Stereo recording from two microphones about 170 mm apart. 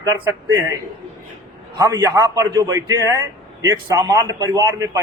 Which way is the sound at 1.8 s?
20° right (ahead or behind).